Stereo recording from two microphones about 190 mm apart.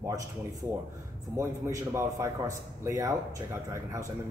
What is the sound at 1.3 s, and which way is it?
A man's voice, 15° right (ahead or behind).